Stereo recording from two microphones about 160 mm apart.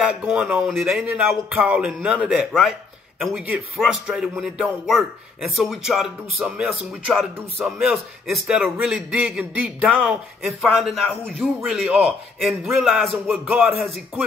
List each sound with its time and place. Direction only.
0.2 s speech: 5° right (ahead or behind)